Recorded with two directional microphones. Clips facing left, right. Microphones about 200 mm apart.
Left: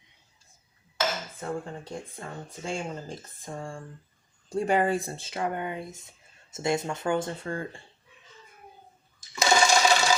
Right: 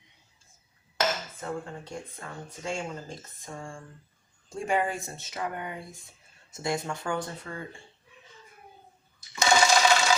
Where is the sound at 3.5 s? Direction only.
35° left (ahead or behind).